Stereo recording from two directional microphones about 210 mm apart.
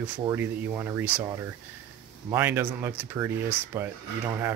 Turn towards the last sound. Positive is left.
turn(degrees=-10)  # may be behind; listen again after turning